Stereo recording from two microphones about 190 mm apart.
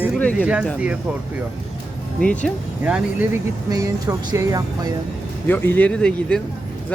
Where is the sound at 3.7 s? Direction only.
20° right (ahead or behind).